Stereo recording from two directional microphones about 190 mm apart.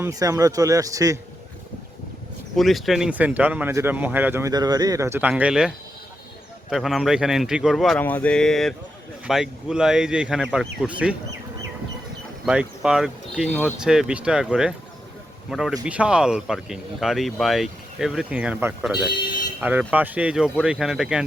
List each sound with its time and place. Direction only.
0.0 s speech: 15° right (ahead or behind)
2.6 s speech: centre (ahead or behind)
12.5 s a man's voice: 5° right (ahead or behind)